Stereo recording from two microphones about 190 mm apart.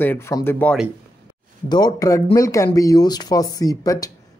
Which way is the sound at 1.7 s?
20° left (ahead or behind).